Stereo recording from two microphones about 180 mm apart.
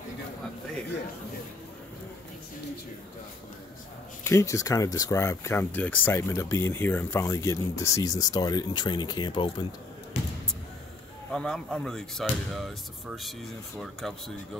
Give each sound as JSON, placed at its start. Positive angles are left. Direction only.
{"t": 4.2, "sound": "speech", "side_deg": 15}
{"t": 11.3, "sound": "speech", "side_deg": 5}